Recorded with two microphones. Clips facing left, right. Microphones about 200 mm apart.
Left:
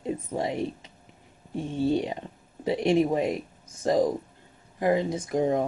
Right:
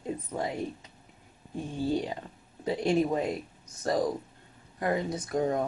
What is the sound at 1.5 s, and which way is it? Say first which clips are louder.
Speech: left 4 dB; 25° left (ahead or behind).